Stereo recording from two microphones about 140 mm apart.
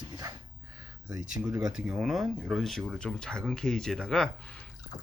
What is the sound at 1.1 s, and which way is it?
Speech, 5° right (ahead or behind).